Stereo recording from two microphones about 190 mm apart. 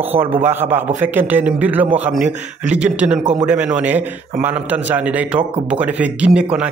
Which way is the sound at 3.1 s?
40° right (ahead or behind).